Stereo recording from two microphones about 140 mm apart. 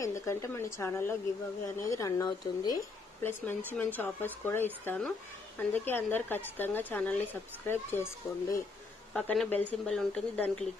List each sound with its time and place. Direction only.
0.0 s speech: 20° left (ahead or behind)
3.2 s a woman's voice: 15° left (ahead or behind)
9.1 s speech: 5° left (ahead or behind)